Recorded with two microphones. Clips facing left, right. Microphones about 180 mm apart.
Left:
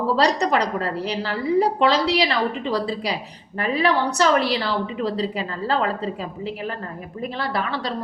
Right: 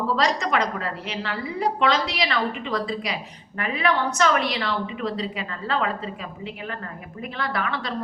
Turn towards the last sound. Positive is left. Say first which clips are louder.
# left 2 dB
turn(degrees=30)  # may be behind; listen again after turning